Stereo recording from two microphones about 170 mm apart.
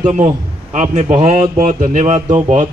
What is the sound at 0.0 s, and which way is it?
Speech, 45° right (ahead or behind).